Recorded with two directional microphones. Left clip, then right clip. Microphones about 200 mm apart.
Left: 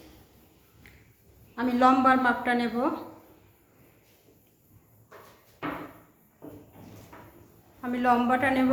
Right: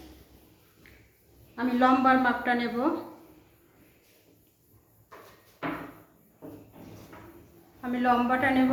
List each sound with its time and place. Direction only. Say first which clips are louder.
1.5 s a woman's voice: left 2 dB; 25° left (ahead or behind)
7.8 s a woman's voice: left 1 dB; 25° left (ahead or behind)